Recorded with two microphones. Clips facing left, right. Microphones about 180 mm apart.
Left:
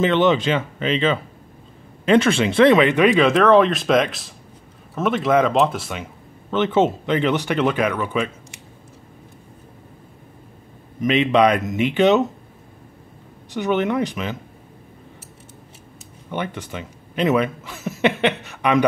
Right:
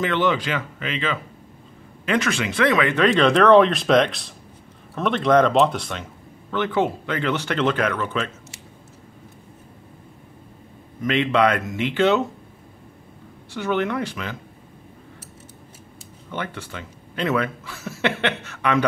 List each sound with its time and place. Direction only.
0.0 s speech: 20° left (ahead or behind); by 6.0 s 5° left (ahead or behind)
6.5 s speech: 20° left (ahead or behind)
11.0 s speech: 20° left (ahead or behind)
13.5 s speech: 20° left (ahead or behind)
16.3 s speech: 15° left (ahead or behind)